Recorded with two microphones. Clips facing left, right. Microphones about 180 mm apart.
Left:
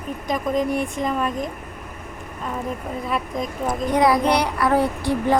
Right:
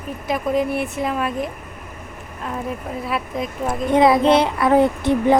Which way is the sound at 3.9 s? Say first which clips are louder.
Right 4 dB; 25° right (ahead or behind).